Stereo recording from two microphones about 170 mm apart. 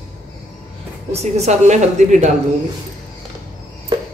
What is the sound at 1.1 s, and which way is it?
A woman's voice, 40° right (ahead or behind).